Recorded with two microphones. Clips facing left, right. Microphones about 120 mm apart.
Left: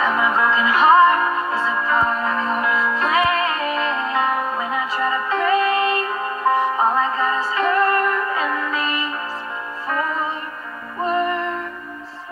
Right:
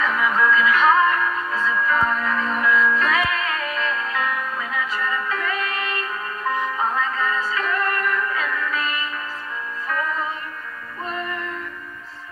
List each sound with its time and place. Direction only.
0.0 s music: 30° left (ahead or behind)
11.1 s music: 30° left (ahead or behind)